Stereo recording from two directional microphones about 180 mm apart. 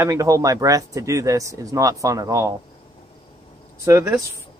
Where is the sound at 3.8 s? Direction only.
15° right (ahead or behind).